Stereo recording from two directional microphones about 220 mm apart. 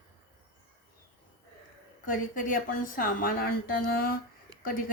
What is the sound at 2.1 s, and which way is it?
A woman's voice, 40° left (ahead or behind).